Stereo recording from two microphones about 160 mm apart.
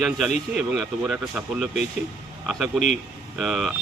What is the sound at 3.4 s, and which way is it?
Speech, centre (ahead or behind).